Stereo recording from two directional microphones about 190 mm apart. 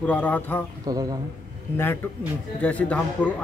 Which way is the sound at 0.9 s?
20° right (ahead or behind).